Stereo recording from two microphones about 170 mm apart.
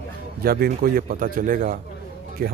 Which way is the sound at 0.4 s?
60° right (ahead or behind).